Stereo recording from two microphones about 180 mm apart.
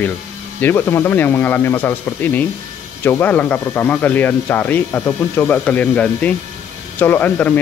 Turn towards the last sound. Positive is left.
turn(degrees=10)  # may be behind; listen again after turning